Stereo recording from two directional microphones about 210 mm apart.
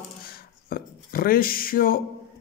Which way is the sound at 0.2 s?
45° left (ahead or behind).